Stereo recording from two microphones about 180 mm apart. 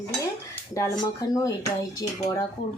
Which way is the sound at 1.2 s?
20° left (ahead or behind).